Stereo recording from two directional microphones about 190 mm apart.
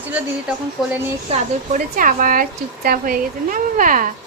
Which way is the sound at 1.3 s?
45° right (ahead or behind).